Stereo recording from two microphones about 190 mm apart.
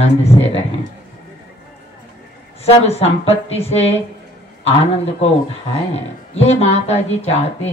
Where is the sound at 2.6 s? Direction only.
35° left (ahead or behind).